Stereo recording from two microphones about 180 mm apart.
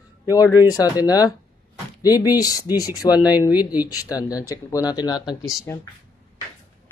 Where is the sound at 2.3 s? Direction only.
20° left (ahead or behind).